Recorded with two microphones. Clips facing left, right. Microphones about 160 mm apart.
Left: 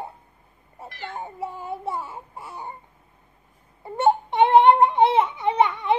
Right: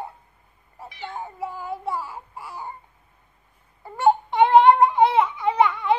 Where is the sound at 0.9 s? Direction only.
Centre (ahead or behind).